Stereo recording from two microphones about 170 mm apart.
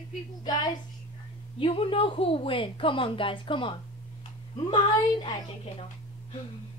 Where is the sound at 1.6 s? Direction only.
30° left (ahead or behind).